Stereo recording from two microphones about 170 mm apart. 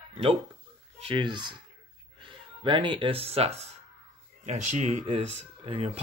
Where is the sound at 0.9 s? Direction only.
30° right (ahead or behind).